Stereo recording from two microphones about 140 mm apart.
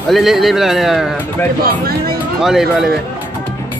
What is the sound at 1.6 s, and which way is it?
Speech, 90° right.